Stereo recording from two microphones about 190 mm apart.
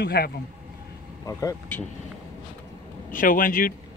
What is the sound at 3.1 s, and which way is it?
Speech, 45° left (ahead or behind).